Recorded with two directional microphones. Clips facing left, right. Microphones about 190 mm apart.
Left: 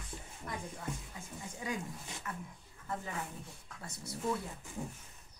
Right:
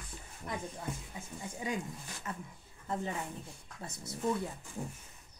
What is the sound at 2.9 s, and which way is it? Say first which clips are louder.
A woman's voice: right 4 dB; 25° right (ahead or behind).